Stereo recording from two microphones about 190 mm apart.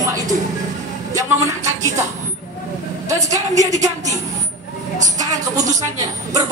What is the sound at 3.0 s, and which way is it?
Speech, 15° right (ahead or behind).